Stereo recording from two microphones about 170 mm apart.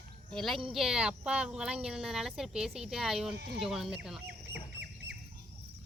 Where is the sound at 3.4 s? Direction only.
75° right (ahead or behind).